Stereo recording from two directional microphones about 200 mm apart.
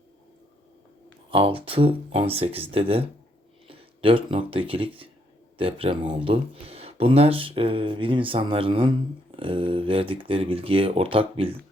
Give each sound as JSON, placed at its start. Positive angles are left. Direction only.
{"t": 1.3, "sound": "speech", "side_deg": -25}